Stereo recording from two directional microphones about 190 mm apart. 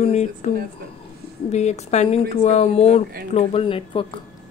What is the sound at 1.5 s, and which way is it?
Speech, 35° left (ahead or behind).